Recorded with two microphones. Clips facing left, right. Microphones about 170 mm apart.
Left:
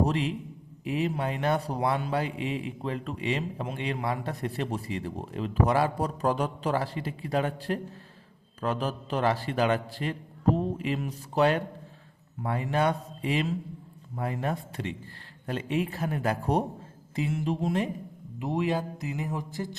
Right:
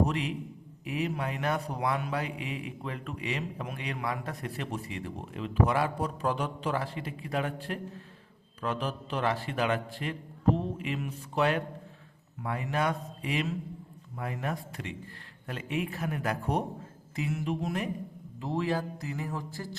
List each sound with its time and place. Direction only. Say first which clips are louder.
0.0 s a man's voice: left 2 dB; 30° left (ahead or behind)